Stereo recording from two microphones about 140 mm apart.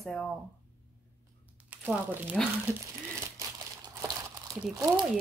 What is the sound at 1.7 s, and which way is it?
Speech, 10° right (ahead or behind).